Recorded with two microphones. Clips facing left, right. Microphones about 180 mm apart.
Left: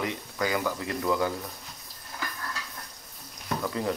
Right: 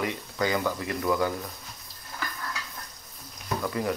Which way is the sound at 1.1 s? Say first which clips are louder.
Right 1 dB; 20° left (ahead or behind).